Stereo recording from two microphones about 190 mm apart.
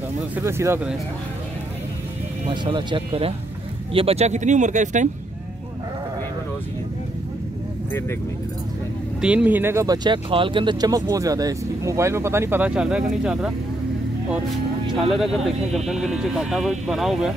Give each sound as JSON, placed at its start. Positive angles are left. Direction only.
{"t": 0.4, "sound": "speech", "side_deg": -15}
{"t": 2.5, "sound": "speech", "side_deg": -25}
{"t": 9.2, "sound": "speech", "side_deg": -5}
{"t": 15.1, "sound": "speech", "side_deg": 0}